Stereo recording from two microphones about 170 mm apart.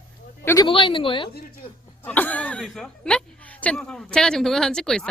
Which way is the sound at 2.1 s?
10° left (ahead or behind).